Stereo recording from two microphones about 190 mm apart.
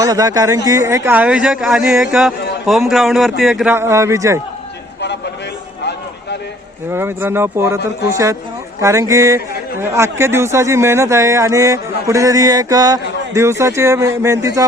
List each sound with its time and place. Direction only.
0.0 s speech: 20° right (ahead or behind)
4.9 s a sound: 65° left (ahead or behind)
6.9 s speech: 10° right (ahead or behind)